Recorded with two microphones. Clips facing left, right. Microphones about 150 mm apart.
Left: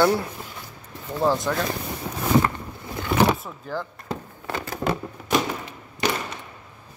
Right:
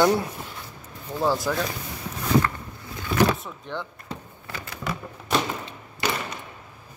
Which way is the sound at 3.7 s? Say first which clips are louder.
Left 3 dB; 5° left (ahead or behind).